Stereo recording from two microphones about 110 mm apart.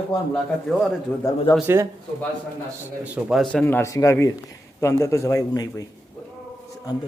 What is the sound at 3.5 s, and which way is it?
A man's voice, 20° left (ahead or behind).